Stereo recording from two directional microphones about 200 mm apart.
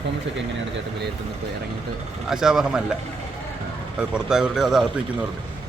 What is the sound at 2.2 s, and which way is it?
Speech, 5° right (ahead or behind).